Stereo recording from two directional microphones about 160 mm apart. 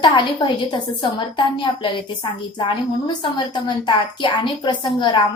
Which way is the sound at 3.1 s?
30° left (ahead or behind).